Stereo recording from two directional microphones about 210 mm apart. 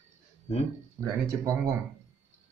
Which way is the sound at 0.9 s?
15° right (ahead or behind).